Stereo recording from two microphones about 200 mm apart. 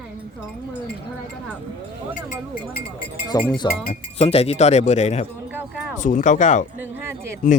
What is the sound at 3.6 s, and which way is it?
A man's voice, 20° left (ahead or behind).